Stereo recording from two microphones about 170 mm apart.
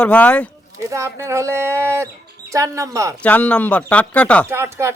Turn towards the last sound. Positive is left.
turn(degrees=-15)  # may be behind; listen again after turning